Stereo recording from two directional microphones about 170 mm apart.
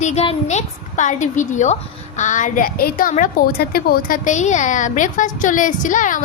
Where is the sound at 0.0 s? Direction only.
40° left (ahead or behind).